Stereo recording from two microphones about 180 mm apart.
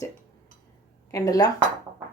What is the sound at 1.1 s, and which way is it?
Speech, 20° left (ahead or behind).